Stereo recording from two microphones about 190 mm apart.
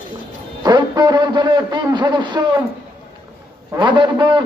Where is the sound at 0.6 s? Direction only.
20° right (ahead or behind).